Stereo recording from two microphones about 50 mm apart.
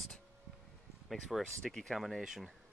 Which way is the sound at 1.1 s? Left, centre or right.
Centre.